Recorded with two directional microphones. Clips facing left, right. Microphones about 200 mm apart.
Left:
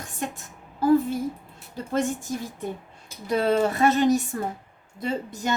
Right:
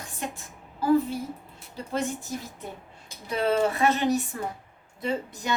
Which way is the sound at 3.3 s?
40° left (ahead or behind).